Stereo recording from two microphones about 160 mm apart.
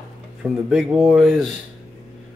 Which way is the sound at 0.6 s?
Centre (ahead or behind).